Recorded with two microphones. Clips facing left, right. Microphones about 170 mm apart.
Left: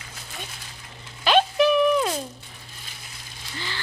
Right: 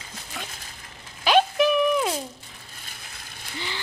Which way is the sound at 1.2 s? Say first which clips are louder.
Even; 10° right (ahead or behind).